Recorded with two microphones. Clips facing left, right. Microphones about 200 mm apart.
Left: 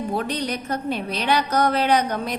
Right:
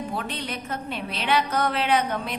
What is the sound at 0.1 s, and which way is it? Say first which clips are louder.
A woman's voice: left 6 dB; 40° left (ahead or behind).